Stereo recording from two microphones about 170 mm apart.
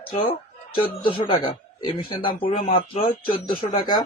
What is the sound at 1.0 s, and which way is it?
Speech, 30° left (ahead or behind).